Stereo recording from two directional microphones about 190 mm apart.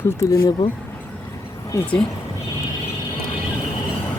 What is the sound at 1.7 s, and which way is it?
Speech, 5° left (ahead or behind).